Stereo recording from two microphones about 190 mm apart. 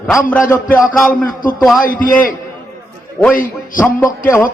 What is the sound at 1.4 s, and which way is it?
Speech, 45° left (ahead or behind).